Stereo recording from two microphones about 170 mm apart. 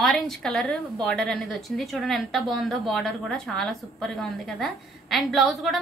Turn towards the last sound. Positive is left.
turn(degrees=0)  # may be behind; listen again after turning